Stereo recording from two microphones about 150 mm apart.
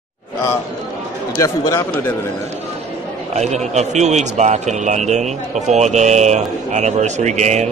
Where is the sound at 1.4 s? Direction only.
20° left (ahead or behind).